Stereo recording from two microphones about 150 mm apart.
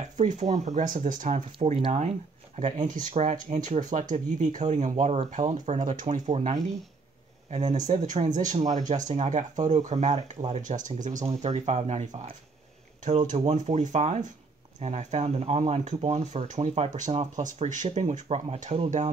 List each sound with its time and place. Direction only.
0.2 s speech: 55° right (ahead or behind)
7.8 s speech: 55° right (ahead or behind)
13.5 s speech: 50° right (ahead or behind)